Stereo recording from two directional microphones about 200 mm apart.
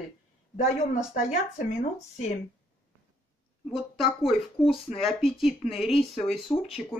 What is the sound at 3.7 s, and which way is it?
Speech, centre (ahead or behind).